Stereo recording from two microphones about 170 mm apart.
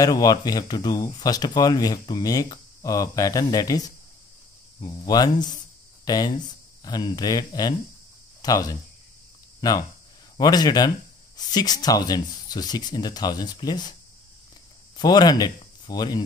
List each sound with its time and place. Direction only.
0.0 s speech: 20° left (ahead or behind)
15.0 s speech: 25° left (ahead or behind)